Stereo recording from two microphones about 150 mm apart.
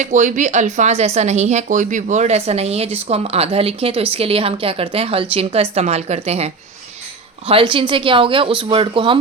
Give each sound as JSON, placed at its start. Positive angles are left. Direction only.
{"t": 0.0, "sound": "speech", "side_deg": -55}